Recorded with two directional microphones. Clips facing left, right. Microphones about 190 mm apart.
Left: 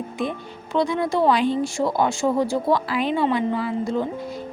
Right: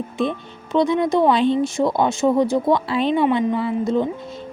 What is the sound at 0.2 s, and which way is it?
A woman's voice, 20° right (ahead or behind).